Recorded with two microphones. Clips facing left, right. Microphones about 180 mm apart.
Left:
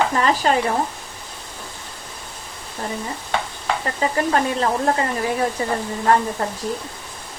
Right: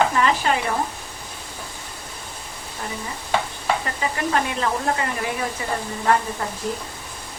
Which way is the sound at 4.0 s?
35° left (ahead or behind).